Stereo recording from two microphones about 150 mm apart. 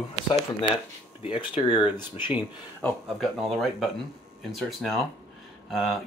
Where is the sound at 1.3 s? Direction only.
35° left (ahead or behind).